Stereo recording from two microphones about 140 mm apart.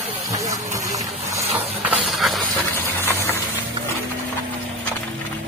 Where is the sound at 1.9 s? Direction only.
Centre (ahead or behind).